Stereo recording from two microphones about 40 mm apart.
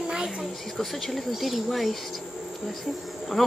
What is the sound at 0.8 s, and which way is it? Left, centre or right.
Speech, centre.